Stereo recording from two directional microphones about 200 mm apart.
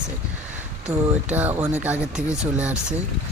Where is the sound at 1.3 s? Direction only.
10° right (ahead or behind).